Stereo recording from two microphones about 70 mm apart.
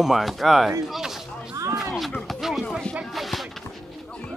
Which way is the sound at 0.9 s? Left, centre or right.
Centre.